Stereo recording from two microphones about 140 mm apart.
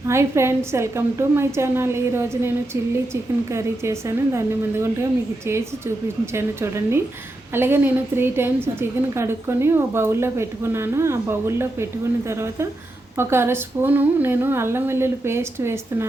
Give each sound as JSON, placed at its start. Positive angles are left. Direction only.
{"t": 0.1, "sound": "a woman's voice", "side_deg": -20}
{"t": 6.3, "sound": "a woman's voice", "side_deg": -20}